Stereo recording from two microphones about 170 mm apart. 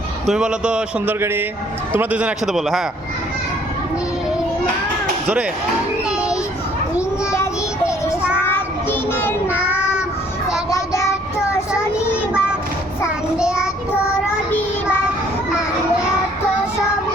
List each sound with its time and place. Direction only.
0.3 s a man's voice: 5° right (ahead or behind)
6.1 s children playing: 5° right (ahead or behind)
8.4 s child singing: 10° left (ahead or behind)
12.1 s child singing: 5° right (ahead or behind)
14.5 s child singing: 15° left (ahead or behind)